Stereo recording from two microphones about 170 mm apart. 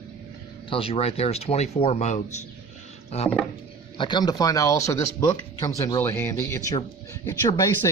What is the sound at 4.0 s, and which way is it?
Speech, 25° left (ahead or behind).